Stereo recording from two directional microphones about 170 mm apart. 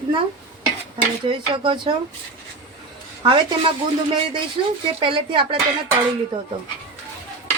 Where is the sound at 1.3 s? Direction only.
30° right (ahead or behind).